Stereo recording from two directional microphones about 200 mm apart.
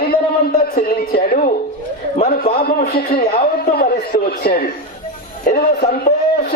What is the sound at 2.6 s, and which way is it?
A man's voice, 50° left (ahead or behind).